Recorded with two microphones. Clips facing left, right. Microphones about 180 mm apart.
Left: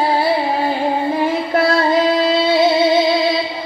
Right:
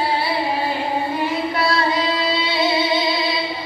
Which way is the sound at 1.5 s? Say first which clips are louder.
Left 8 dB; 50° left (ahead or behind).